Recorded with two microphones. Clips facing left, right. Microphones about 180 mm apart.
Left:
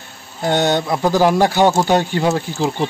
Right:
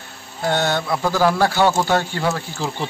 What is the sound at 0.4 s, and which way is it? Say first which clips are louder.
A man's voice: left 4 dB; 20° left (ahead or behind).